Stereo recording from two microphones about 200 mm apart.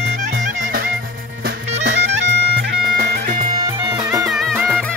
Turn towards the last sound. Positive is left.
turn(degrees=-10)  # may be behind; listen again after turning